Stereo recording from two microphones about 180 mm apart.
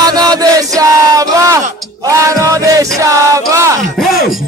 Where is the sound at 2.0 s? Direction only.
20° right (ahead or behind).